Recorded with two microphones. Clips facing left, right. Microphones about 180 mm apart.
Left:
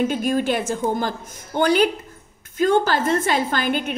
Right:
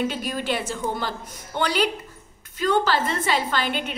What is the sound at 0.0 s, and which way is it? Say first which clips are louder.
A woman's voice: left 6 dB; 50° left (ahead or behind).